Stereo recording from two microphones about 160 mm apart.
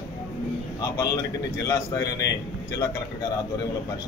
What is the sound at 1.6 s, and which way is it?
Speech, 25° left (ahead or behind).